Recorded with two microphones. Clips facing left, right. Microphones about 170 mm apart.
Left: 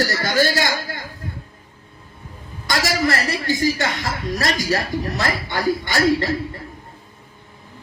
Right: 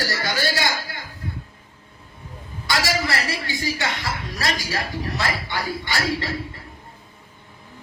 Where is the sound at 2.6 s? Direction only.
45° left (ahead or behind).